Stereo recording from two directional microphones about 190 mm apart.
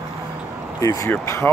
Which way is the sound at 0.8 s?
15° left (ahead or behind).